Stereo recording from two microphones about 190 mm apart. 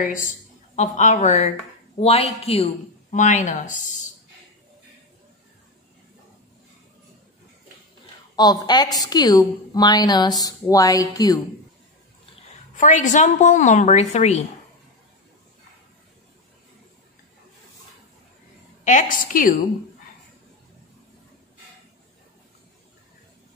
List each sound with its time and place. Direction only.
0.0 s a woman's voice: 45° left (ahead or behind)
8.4 s a woman's voice: 20° left (ahead or behind)
12.7 s speech: 40° left (ahead or behind)
18.9 s a woman's voice: 45° left (ahead or behind)